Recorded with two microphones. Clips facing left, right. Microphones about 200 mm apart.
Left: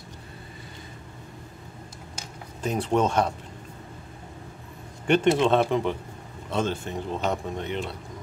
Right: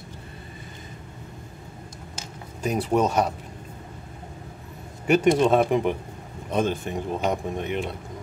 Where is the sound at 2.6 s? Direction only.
10° right (ahead or behind).